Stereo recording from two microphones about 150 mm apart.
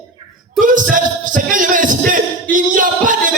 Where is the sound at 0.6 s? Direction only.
65° right (ahead or behind).